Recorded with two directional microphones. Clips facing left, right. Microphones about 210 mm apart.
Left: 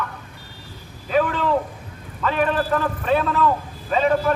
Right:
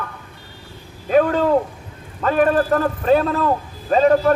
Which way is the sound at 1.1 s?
45° right (ahead or behind).